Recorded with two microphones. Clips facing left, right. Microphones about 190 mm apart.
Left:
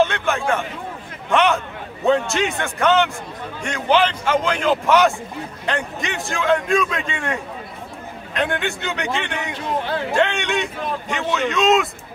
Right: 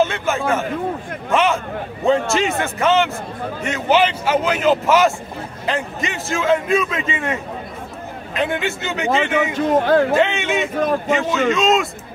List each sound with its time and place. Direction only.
0.0 s a sound: centre (ahead or behind)
1.3 s a man's voice: centre (ahead or behind)
9.5 s speech: 45° right (ahead or behind)
10.1 s a man's voice: 5° right (ahead or behind)